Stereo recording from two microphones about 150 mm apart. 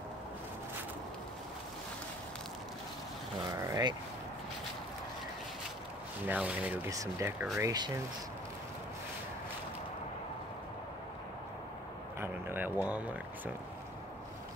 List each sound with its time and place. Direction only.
3.5 s speech: 20° right (ahead or behind)
6.2 s speech: 10° right (ahead or behind)
6.9 s speech: 20° right (ahead or behind)
12.2 s a sound: 15° right (ahead or behind)